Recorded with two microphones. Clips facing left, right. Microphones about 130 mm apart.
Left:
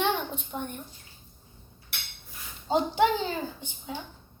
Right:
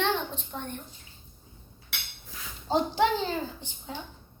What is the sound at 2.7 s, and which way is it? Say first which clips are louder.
A woman's voice: left 1 dB; centre (ahead or behind).